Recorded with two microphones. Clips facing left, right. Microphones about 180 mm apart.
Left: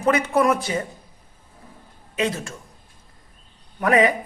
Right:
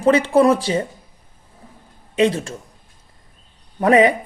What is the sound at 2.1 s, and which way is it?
Speech, 30° right (ahead or behind).